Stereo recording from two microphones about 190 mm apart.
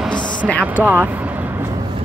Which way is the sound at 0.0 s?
5° left (ahead or behind).